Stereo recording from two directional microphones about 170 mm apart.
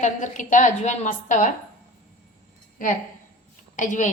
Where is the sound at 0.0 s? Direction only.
45° left (ahead or behind).